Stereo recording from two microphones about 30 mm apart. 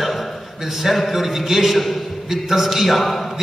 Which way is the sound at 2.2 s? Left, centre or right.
Centre.